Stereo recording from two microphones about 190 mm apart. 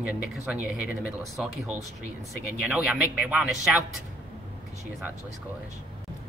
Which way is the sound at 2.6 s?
5° right (ahead or behind).